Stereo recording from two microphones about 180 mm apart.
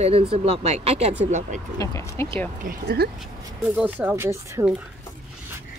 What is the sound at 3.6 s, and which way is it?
Speech, 5° right (ahead or behind).